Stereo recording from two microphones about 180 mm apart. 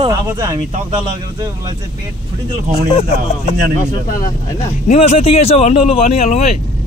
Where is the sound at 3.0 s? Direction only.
35° left (ahead or behind).